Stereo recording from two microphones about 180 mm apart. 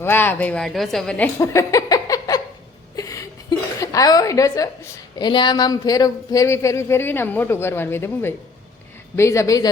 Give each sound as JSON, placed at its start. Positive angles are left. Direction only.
{"t": 0.0, "sound": "speech", "side_deg": 10}
{"t": 1.4, "sound": "a sound", "side_deg": 15}
{"t": 3.8, "sound": "a woman's voice", "side_deg": 20}